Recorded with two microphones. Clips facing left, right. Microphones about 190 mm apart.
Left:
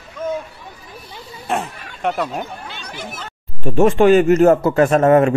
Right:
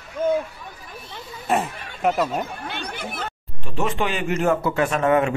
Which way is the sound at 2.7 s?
60° right (ahead or behind).